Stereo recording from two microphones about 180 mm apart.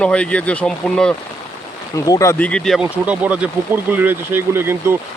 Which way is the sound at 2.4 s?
5° left (ahead or behind).